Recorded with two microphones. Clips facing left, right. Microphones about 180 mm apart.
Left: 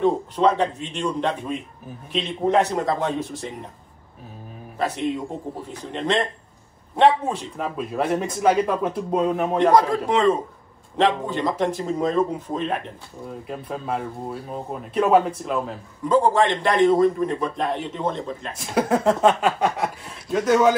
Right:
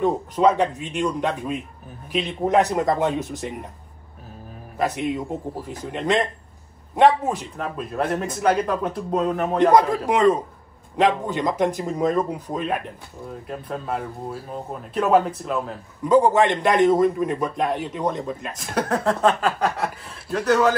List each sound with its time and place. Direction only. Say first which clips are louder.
0.0 s speech: even; 5° right (ahead or behind)
3.2 s speech: right 1 dB; 20° right (ahead or behind)
4.7 s speech: right 1 dB; 5° right (ahead or behind)
11.2 s speech: right 1 dB; 15° right (ahead or behind)
11.8 s speech: even; 5° right (ahead or behind)
16.1 s speech: right 2 dB; 20° right (ahead or behind)
16.8 s speech: left 2 dB; centre (ahead or behind)